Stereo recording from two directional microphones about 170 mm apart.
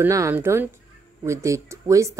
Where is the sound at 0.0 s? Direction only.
15° right (ahead or behind).